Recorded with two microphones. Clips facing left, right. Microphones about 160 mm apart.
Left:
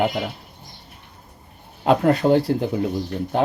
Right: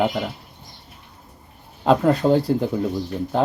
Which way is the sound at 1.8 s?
5° left (ahead or behind).